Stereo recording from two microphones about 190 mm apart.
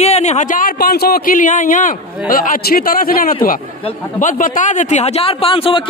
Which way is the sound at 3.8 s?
35° left (ahead or behind).